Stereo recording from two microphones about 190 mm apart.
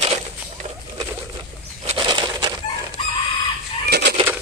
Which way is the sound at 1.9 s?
25° right (ahead or behind).